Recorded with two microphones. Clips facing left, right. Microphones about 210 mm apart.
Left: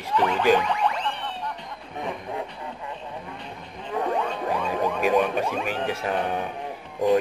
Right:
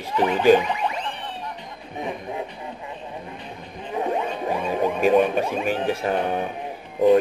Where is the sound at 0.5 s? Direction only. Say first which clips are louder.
Right 3 dB; 15° right (ahead or behind).